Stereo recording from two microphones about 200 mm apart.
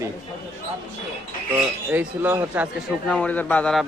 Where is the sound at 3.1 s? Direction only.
5° left (ahead or behind).